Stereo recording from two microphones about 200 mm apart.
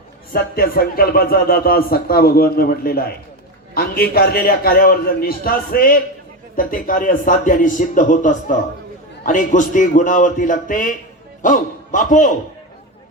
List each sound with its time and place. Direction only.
0.3 s a man's voice: 50° left (ahead or behind)